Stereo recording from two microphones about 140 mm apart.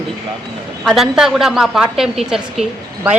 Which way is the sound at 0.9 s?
5° right (ahead or behind).